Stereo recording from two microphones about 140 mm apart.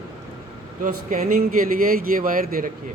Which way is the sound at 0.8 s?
70° right (ahead or behind).